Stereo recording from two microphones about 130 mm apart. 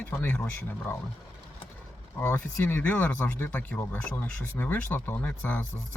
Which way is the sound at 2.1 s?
15° left (ahead or behind).